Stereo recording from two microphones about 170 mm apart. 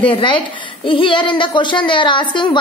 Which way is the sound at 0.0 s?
30° left (ahead or behind).